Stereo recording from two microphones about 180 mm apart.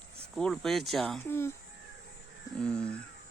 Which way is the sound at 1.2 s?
15° left (ahead or behind).